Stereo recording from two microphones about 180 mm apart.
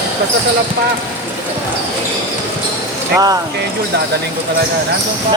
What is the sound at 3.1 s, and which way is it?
Speech, 20° right (ahead or behind).